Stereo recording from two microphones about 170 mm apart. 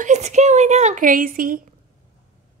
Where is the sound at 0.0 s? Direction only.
45° right (ahead or behind).